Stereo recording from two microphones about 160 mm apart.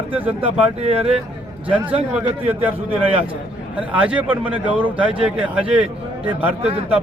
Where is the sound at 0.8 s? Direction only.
40° right (ahead or behind).